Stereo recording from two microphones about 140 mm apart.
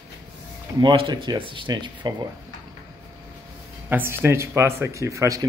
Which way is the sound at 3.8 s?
15° right (ahead or behind).